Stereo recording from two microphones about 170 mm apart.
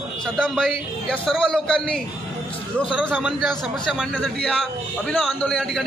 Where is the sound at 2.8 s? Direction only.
10° right (ahead or behind).